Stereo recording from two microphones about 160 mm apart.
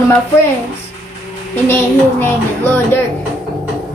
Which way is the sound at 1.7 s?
15° left (ahead or behind).